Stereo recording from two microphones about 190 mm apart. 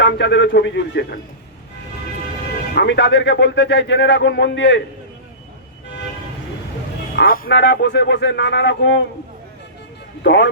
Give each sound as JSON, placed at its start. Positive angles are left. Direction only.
{"t": 0.0, "sound": "speech", "side_deg": 70}
{"t": 2.7, "sound": "speech", "side_deg": 65}
{"t": 7.3, "sound": "speech", "side_deg": 50}
{"t": 7.5, "sound": "speech", "side_deg": 70}
{"t": 10.2, "sound": "speech", "side_deg": 65}